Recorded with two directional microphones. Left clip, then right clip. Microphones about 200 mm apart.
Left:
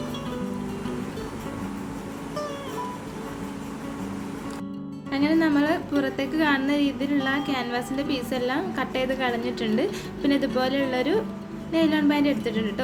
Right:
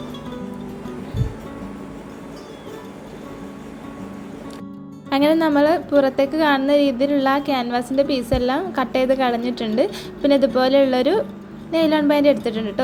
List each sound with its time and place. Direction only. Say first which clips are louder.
5.1 s speech: right 6 dB; 40° right (ahead or behind)
5.5 s a woman's voice: right 7 dB; 30° right (ahead or behind)